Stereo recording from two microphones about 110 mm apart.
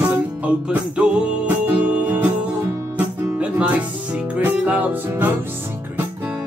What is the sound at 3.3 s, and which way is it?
Music, 15° right (ahead or behind).